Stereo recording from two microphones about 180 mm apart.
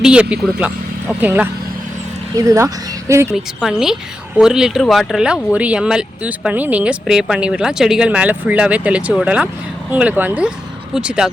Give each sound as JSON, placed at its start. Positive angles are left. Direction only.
{"t": 0.0, "sound": "speech", "side_deg": -5}
{"t": 3.3, "sound": "speech", "side_deg": 0}